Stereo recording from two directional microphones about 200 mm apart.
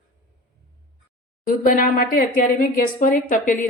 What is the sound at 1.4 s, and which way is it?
A woman's voice, 45° left (ahead or behind).